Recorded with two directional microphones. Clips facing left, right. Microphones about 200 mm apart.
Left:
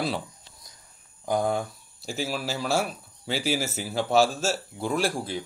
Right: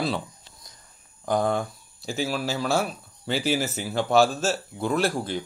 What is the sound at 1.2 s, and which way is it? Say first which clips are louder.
A man's voice: right 1 dB; 5° left (ahead or behind).